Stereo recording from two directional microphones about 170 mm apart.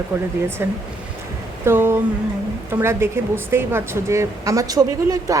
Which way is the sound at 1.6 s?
15° right (ahead or behind).